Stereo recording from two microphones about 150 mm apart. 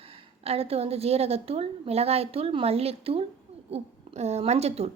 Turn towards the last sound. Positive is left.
turn(degrees=-45)  # may be behind; listen again after turning